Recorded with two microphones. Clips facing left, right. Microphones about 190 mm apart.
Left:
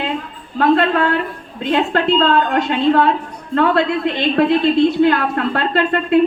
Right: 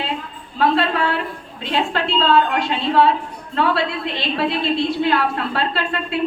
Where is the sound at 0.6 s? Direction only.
55° left (ahead or behind).